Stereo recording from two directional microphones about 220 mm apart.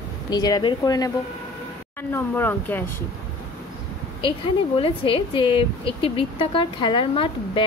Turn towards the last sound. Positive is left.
turn(degrees=25)  # may be behind; listen again after turning